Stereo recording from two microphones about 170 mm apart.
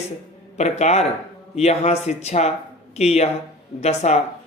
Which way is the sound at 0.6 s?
40° left (ahead or behind).